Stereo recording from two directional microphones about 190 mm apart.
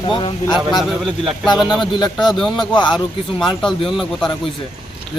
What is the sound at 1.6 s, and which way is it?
Speech, centre (ahead or behind).